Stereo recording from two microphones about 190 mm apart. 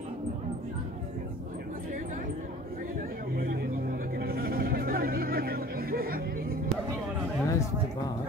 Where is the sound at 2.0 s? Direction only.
45° right (ahead or behind).